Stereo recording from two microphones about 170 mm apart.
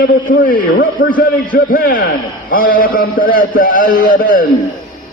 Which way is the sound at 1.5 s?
55° left (ahead or behind).